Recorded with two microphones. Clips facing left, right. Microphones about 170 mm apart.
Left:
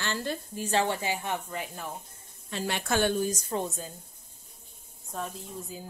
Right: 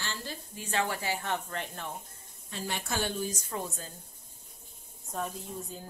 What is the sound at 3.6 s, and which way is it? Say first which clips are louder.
Speech: left 4 dB; 15° left (ahead or behind).